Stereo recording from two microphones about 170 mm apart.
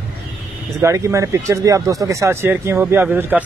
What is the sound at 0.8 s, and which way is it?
Speech, 20° right (ahead or behind).